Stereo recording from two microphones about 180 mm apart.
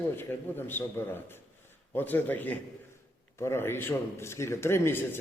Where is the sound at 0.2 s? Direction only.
10° left (ahead or behind).